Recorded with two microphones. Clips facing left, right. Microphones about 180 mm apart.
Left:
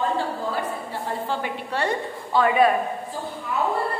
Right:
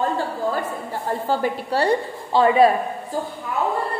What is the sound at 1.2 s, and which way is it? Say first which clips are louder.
A woman's voice: right 6 dB; 35° right (ahead or behind).